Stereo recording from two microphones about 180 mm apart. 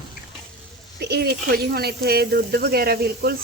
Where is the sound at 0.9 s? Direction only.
70° right (ahead or behind).